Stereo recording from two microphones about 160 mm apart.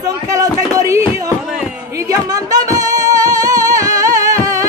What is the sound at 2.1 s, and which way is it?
Music, 20° right (ahead or behind).